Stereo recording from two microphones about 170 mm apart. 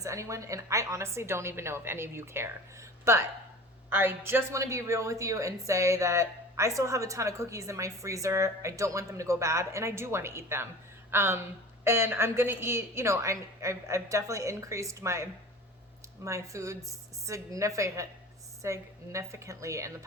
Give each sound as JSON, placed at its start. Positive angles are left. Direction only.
{"t": 0.0, "sound": "a woman's voice", "side_deg": -20}